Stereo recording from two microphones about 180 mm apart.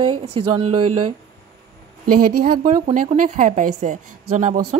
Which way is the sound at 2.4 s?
55° right (ahead or behind).